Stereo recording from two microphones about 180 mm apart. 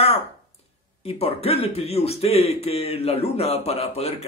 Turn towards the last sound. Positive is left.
turn(degrees=35)  # may be behind; listen again after turning